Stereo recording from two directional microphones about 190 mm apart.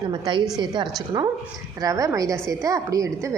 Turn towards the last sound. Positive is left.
turn(degrees=-15)  # may be behind; listen again after turning